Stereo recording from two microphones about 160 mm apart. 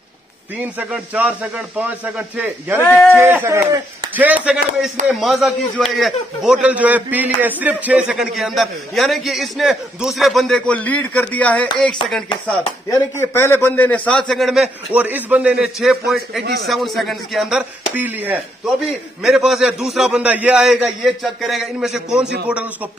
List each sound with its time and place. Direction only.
0.6 s speech: 10° right (ahead or behind)
2.8 s speech: 10° left (ahead or behind)
3.2 s a man's voice: 15° right (ahead or behind); by 11.7 s 10° left (ahead or behind)
12.9 s a man's voice: 15° left (ahead or behind); by 22.2 s 5° right (ahead or behind)